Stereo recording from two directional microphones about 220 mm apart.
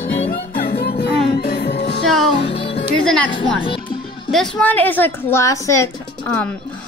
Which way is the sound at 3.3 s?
20° left (ahead or behind).